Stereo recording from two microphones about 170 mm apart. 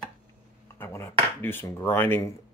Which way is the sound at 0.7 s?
15° left (ahead or behind).